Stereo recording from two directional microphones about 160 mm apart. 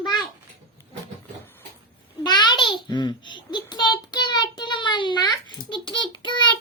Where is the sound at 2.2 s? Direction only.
30° left (ahead or behind).